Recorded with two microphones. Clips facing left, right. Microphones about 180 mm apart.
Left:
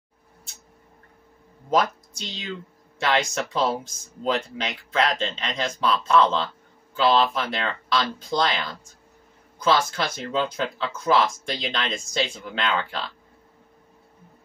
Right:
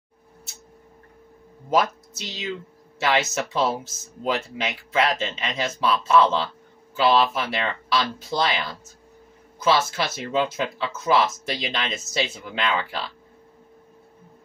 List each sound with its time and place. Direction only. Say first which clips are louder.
1.7 s a woman's voice: even; 5° right (ahead or behind)